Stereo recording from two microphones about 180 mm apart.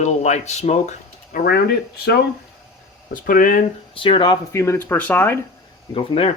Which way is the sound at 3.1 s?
50° left (ahead or behind).